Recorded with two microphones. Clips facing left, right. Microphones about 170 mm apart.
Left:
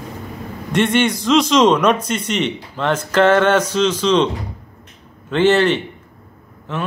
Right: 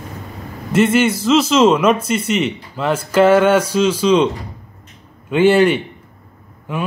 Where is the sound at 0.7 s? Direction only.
5° right (ahead or behind).